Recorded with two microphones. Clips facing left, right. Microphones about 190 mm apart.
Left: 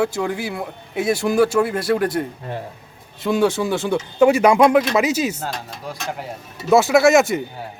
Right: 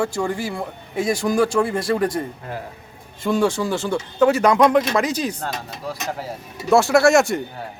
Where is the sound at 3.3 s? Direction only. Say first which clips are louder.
Left 1 dB; 5° left (ahead or behind).